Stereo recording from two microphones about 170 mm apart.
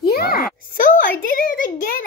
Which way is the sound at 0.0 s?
65° left (ahead or behind).